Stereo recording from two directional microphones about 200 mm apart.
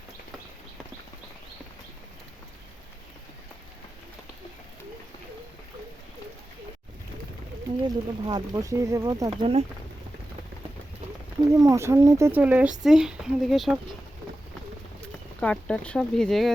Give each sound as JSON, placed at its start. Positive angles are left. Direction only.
{"t": 7.9, "sound": "speech", "side_deg": -20}
{"t": 11.5, "sound": "speech", "side_deg": -15}
{"t": 15.4, "sound": "speech", "side_deg": 5}